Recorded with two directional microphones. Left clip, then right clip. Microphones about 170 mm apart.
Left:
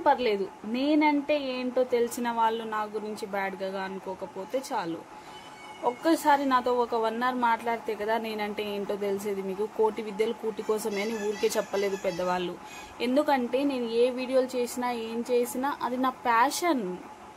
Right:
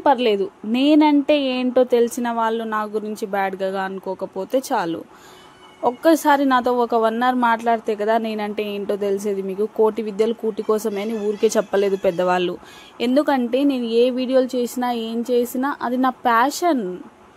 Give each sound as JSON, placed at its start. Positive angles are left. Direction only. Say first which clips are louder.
{"t": 0.0, "sound": "a woman's voice", "louder": "right 7 dB", "side_deg": -40}